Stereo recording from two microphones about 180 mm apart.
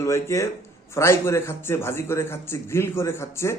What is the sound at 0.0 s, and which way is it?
A man's voice, 15° left (ahead or behind).